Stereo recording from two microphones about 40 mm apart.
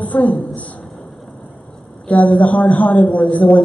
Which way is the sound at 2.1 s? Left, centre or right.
Left.